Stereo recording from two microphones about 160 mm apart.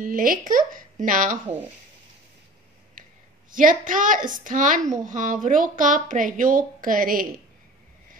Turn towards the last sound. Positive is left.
turn(degrees=-60)  # may be behind; listen again after turning